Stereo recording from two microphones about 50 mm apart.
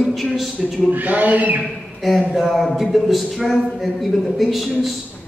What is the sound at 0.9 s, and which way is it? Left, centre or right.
Speech, right.